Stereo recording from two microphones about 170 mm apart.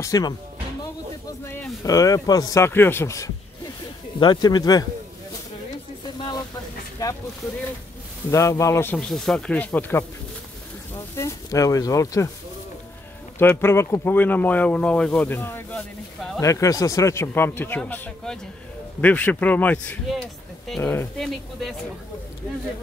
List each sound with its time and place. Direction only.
0.0 s speech: 20° left (ahead or behind)
1.4 s speech: 15° left (ahead or behind)
7.0 s speech: 20° left (ahead or behind)
8.3 s speech: 15° left (ahead or behind)
11.1 s speech: 20° left (ahead or behind)
13.4 s speech: 15° left (ahead or behind)